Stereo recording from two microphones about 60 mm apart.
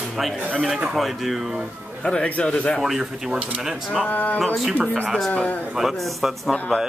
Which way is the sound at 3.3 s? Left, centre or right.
Right.